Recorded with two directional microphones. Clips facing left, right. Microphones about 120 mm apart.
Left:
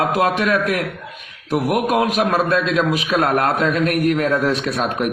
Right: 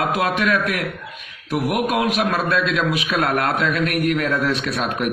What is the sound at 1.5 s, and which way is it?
A man's voice, 40° left (ahead or behind).